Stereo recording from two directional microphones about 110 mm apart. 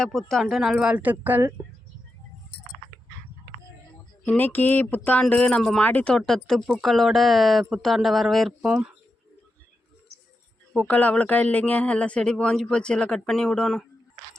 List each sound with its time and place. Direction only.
0.0 s speech: 5° left (ahead or behind); by 1.5 s 20° right (ahead or behind)
4.3 s speech: 15° left (ahead or behind); by 8.9 s 5° right (ahead or behind)
10.8 s speech: 10° left (ahead or behind)